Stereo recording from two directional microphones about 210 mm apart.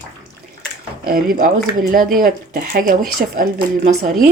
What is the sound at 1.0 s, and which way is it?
A woman's voice, 40° right (ahead or behind).